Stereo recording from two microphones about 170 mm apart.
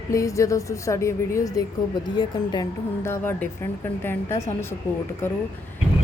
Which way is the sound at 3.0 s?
15° left (ahead or behind).